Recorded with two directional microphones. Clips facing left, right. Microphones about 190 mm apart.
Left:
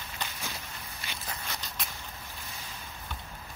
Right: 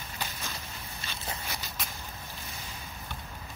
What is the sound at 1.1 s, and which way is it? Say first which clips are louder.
Biting: left 1 dB; 15° left (ahead or behind).